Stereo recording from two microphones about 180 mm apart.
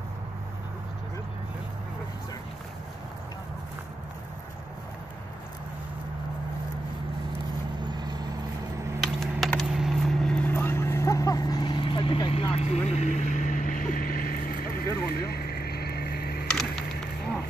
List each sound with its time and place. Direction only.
7.8 s vehicle: 25° right (ahead or behind)
9.0 s typing: centre (ahead or behind); by 16.4 s 60° left (ahead or behind)